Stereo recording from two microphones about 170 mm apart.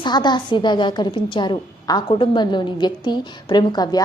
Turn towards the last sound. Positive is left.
turn(degrees=25)  # may be behind; listen again after turning